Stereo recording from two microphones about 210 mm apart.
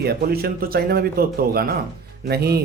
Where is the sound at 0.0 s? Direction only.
50° right (ahead or behind).